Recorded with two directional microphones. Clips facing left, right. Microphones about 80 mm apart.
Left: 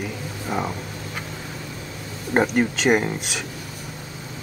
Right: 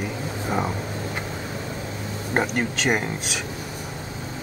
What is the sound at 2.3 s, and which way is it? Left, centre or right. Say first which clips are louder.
Speech: left 4 dB; centre.